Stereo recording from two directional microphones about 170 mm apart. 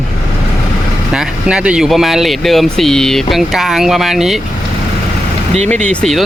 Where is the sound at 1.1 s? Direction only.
5° right (ahead or behind).